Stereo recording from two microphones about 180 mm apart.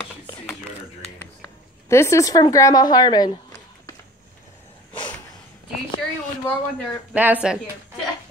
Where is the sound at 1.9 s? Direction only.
15° left (ahead or behind).